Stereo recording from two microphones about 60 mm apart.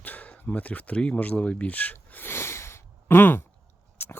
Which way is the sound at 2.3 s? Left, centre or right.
Left.